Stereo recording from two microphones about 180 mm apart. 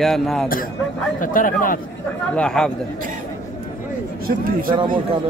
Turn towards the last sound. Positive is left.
turn(degrees=-50)  # may be behind; listen again after turning